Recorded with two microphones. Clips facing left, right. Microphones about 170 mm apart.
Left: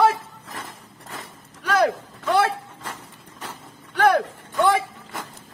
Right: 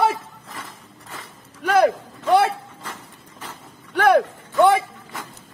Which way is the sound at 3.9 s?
60° right (ahead or behind).